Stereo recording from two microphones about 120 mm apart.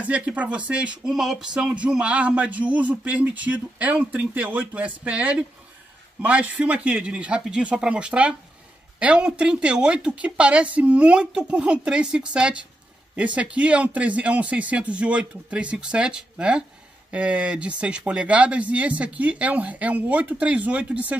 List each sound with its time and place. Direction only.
0.0 s speech: 10° right (ahead or behind)